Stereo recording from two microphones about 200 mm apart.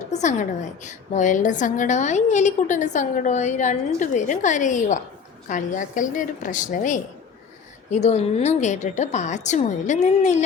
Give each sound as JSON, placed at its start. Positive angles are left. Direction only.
{"t": 0.1, "sound": "a woman's voice", "side_deg": 35}